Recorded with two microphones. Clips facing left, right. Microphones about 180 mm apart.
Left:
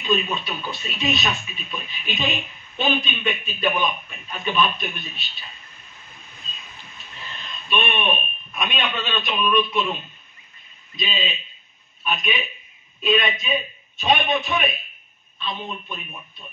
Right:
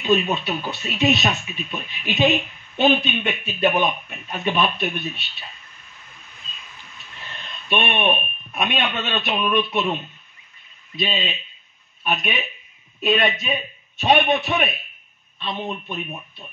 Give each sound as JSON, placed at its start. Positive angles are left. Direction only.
{"t": 0.0, "sound": "a man's voice", "side_deg": -70}
{"t": 7.7, "sound": "a man's voice", "side_deg": -65}
{"t": 11.0, "sound": "a man's voice", "side_deg": -65}